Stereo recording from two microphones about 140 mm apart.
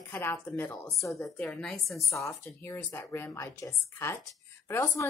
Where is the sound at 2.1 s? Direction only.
20° left (ahead or behind).